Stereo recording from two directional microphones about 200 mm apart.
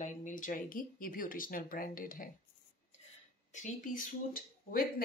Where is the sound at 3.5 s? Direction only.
40° left (ahead or behind).